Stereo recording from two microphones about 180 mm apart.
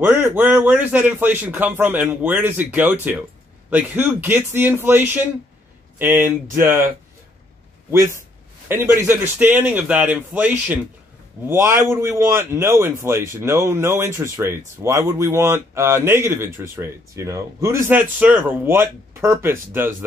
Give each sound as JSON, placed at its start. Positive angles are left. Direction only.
{"t": 0.0, "sound": "a man's voice", "side_deg": -15}
{"t": 7.9, "sound": "a man's voice", "side_deg": -15}